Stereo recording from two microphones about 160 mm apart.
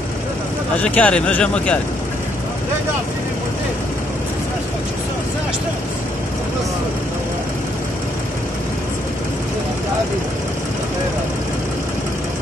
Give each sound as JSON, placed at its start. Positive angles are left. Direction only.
{"t": 0.7, "sound": "speech", "side_deg": 10}